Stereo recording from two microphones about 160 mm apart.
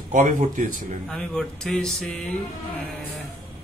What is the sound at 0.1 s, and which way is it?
Speech, 55° right (ahead or behind).